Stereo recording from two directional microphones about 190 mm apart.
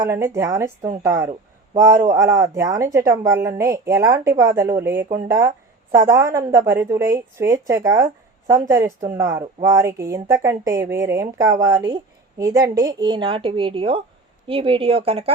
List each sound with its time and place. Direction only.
0.0 s a woman's voice: 15° right (ahead or behind); by 15.3 s 30° right (ahead or behind)